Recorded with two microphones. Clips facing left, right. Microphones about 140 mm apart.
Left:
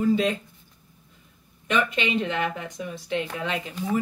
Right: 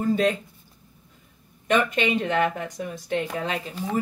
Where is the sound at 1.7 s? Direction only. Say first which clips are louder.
Right 3 dB; 45° right (ahead or behind).